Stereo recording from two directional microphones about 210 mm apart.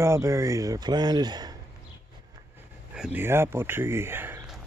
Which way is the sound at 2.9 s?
5° right (ahead or behind).